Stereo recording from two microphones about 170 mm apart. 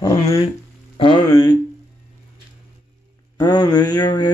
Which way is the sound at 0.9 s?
30° left (ahead or behind).